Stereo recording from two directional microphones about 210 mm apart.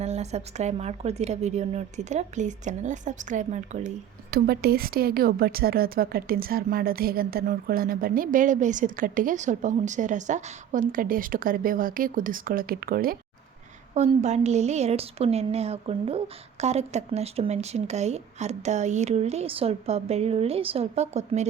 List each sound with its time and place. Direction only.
0.0 s a woman's voice: 30° right (ahead or behind)
4.3 s a woman's voice: 50° right (ahead or behind)
13.9 s a woman's voice: 30° right (ahead or behind)